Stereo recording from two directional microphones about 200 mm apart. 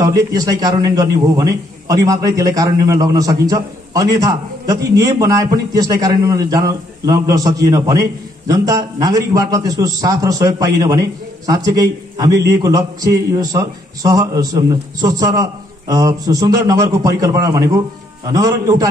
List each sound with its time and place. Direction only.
0.0 s a man's voice: 20° right (ahead or behind)